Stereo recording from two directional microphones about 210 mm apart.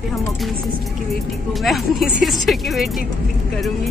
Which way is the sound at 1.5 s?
Centre (ahead or behind).